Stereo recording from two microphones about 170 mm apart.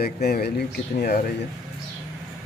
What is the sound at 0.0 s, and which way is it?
Speech, 65° left (ahead or behind).